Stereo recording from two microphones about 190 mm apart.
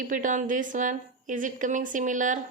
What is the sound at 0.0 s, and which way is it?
A woman's voice, 45° right (ahead or behind).